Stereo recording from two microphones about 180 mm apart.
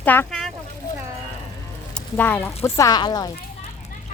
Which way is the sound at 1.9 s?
10° left (ahead or behind).